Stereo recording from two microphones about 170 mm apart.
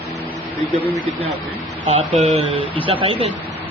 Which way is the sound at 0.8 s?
10° right (ahead or behind).